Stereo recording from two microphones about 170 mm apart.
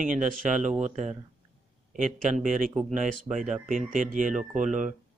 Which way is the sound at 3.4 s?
50° right (ahead or behind).